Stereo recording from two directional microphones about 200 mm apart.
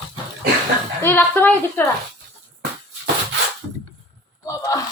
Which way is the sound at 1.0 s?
10° left (ahead or behind).